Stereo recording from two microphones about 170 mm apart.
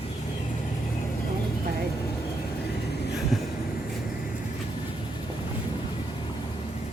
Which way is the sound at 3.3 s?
Centre (ahead or behind).